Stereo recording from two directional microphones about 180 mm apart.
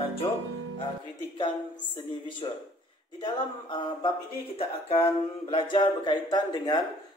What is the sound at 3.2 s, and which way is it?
Speech, 25° left (ahead or behind).